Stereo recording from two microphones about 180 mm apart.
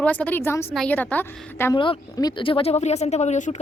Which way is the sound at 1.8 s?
25° left (ahead or behind).